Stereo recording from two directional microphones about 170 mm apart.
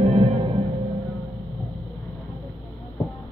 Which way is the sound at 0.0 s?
40° right (ahead or behind).